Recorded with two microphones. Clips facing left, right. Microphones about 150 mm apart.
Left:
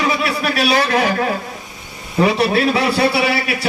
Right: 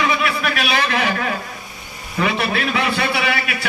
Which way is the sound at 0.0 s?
35° left (ahead or behind).